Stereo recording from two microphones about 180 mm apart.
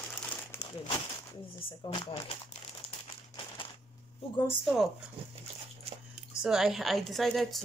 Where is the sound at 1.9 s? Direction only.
30° left (ahead or behind).